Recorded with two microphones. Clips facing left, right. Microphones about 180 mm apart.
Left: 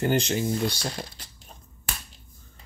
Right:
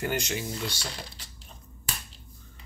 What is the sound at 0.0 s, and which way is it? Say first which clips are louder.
Speech: left 6 dB; 30° left (ahead or behind).